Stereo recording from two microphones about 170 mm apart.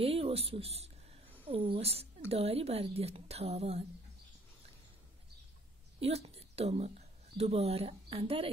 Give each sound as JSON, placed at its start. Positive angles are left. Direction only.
{"t": 0.0, "sound": "a woman's voice", "side_deg": -35}
{"t": 5.9, "sound": "a woman's voice", "side_deg": -35}